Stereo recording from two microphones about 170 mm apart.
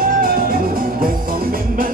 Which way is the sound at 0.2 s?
55° right (ahead or behind).